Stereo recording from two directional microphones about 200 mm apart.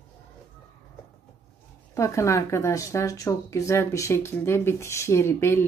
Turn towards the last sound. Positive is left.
turn(degrees=10)  # may be behind; listen again after turning